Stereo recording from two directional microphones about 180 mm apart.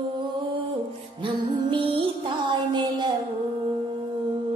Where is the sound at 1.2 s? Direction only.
30° right (ahead or behind).